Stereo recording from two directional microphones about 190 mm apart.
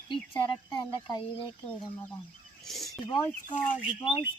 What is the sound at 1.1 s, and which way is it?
Speech, 25° left (ahead or behind).